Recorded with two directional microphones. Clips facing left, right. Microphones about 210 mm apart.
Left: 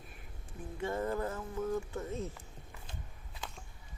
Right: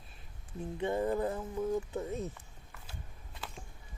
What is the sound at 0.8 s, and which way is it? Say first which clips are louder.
Speech: right 3 dB; 20° right (ahead or behind).